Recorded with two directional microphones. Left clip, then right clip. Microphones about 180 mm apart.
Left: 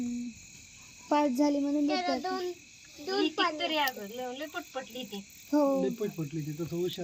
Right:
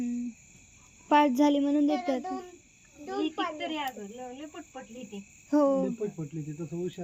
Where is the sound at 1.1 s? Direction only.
15° right (ahead or behind).